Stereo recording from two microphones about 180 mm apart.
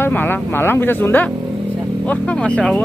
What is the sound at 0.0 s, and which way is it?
Speech, 10° left (ahead or behind).